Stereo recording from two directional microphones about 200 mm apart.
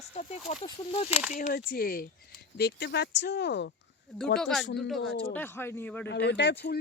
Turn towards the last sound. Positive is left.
turn(degrees=55)  # may be behind; listen again after turning